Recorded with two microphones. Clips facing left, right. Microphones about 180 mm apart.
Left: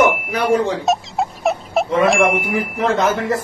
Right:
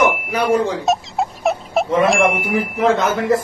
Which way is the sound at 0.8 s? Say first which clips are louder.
Even; centre (ahead or behind).